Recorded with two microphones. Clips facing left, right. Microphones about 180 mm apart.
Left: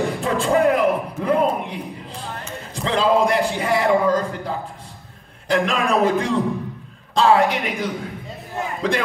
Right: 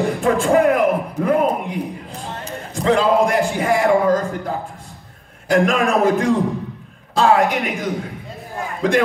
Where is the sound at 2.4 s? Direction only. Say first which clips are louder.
Right 9 dB; 45° right (ahead or behind).